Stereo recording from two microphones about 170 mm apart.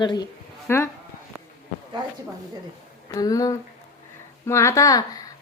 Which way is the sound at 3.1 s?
20° left (ahead or behind).